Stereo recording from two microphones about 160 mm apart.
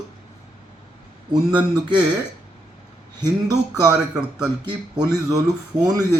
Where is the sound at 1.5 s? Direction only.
30° right (ahead or behind).